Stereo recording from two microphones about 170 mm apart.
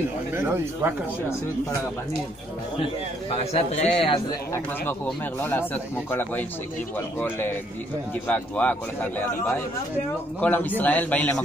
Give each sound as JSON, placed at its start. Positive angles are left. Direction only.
{"t": 0.3, "sound": "speech", "side_deg": -10}
{"t": 2.8, "sound": "a man's voice", "side_deg": 35}
{"t": 4.8, "sound": "speech", "side_deg": 10}